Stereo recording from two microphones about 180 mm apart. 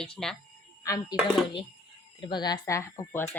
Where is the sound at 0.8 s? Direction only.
20° left (ahead or behind).